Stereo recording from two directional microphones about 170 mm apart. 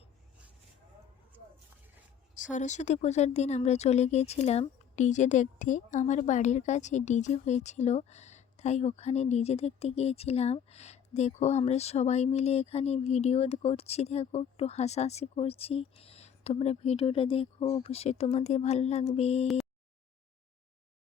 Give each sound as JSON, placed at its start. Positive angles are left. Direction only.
{"t": 2.3, "sound": "speech", "side_deg": 45}